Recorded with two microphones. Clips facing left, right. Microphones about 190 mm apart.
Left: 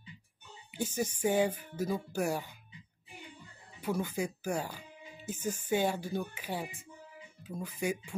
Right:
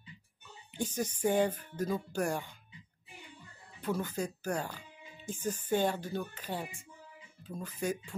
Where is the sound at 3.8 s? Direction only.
10° left (ahead or behind).